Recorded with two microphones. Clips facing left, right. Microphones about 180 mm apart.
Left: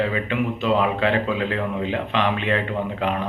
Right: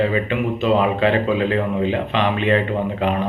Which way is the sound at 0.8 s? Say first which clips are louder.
Right 3 dB; 10° right (ahead or behind).